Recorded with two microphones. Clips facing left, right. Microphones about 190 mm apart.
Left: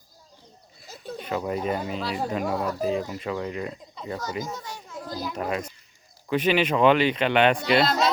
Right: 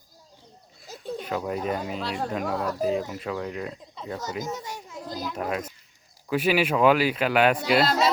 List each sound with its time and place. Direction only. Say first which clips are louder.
0.8 s a sound: right 3 dB; centre (ahead or behind)
1.5 s speech: left 2 dB; centre (ahead or behind)
4.5 s children playing: right 1 dB; 20° right (ahead or behind)
5.2 s speech: left 1 dB; 5° right (ahead or behind)